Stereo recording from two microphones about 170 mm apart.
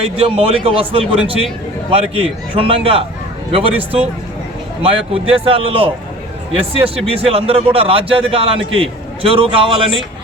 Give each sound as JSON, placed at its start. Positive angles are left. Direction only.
{"t": 0.2, "sound": "a man's voice", "side_deg": -35}